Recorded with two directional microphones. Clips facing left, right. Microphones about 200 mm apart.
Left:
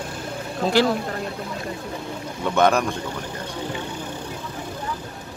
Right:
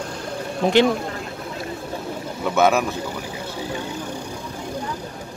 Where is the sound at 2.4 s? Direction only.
5° right (ahead or behind).